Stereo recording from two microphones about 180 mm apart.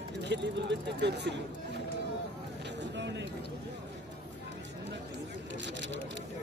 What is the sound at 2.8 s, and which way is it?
Vehicle, 80° right.